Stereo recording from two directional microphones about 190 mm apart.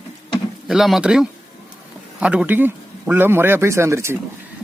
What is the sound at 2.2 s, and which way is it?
A man's voice, 5° right (ahead or behind).